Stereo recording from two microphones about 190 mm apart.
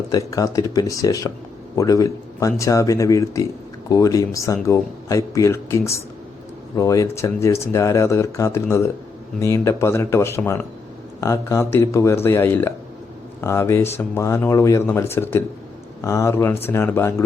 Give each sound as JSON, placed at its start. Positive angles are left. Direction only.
{"t": 0.1, "sound": "speech", "side_deg": 15}